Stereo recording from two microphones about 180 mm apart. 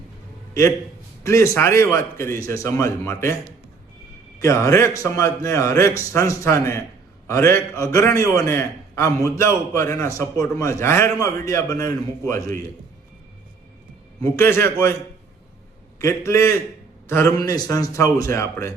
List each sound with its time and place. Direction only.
1.2 s a man's voice: 15° left (ahead or behind)
4.4 s a man's voice: 15° left (ahead or behind)
14.2 s a man's voice: 15° left (ahead or behind)
16.0 s a man's voice: 15° left (ahead or behind)